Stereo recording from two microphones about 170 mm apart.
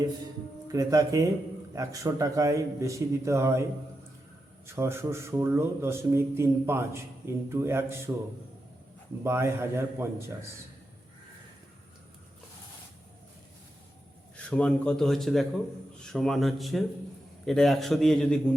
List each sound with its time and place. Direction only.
0.7 s a man's voice: 20° right (ahead or behind)
9.2 s a man's voice: 15° right (ahead or behind)
14.3 s a man's voice: 5° left (ahead or behind)